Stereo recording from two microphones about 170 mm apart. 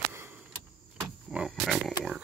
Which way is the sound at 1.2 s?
5° right (ahead or behind).